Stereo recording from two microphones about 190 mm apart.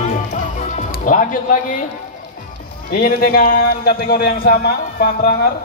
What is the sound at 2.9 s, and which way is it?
A man's voice, 50° left (ahead or behind).